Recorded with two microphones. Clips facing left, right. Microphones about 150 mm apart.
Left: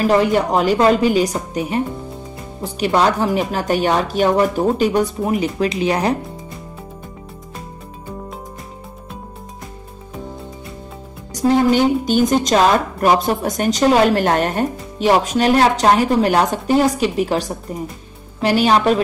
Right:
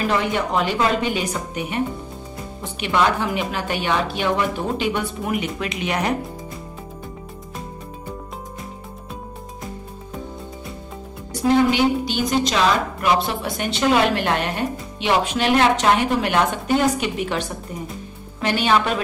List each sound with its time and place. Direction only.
0.0 s a woman's voice: 35° left (ahead or behind)
11.3 s a woman's voice: 40° left (ahead or behind)